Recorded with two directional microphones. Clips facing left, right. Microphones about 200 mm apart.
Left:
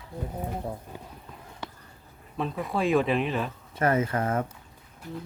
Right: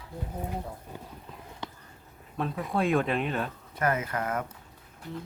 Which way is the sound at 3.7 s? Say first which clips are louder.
Left 4 dB; 30° left (ahead or behind).